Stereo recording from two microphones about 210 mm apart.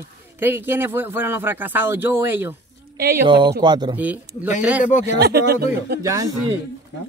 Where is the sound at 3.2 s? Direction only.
20° right (ahead or behind).